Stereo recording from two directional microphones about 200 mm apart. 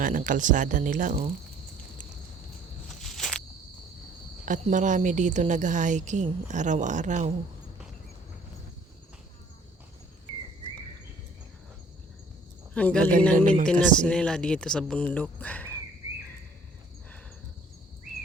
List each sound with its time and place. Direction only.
0.0 s a woman's voice: 40° right (ahead or behind)
3.0 s a sound: centre (ahead or behind)
4.4 s a woman's voice: 40° right (ahead or behind)
12.7 s a man's voice: 5° left (ahead or behind)